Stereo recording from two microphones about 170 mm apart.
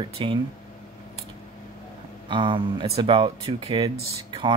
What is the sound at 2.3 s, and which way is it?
Speech, 30° right (ahead or behind).